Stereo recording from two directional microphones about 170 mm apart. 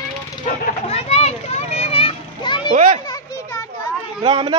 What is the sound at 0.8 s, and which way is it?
Children playing, 40° left (ahead or behind).